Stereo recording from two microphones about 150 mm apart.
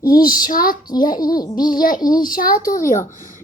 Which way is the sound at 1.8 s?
70° left (ahead or behind).